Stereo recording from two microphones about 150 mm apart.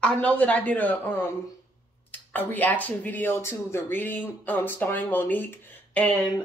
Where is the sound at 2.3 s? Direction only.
10° left (ahead or behind).